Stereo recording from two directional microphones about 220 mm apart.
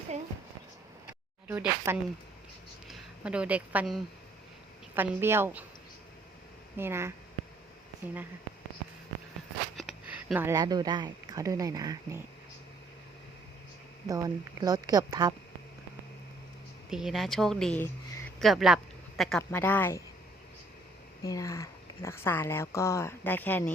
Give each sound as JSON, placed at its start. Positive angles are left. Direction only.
{"t": 1.5, "sound": "speech", "side_deg": -10}
{"t": 6.7, "sound": "speech", "side_deg": -10}
{"t": 9.7, "sound": "speech", "side_deg": -5}
{"t": 14.1, "sound": "speech", "side_deg": -15}
{"t": 16.9, "sound": "speech", "side_deg": 0}
{"t": 21.2, "sound": "speech", "side_deg": 15}